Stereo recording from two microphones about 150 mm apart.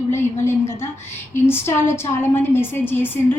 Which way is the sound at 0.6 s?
15° left (ahead or behind).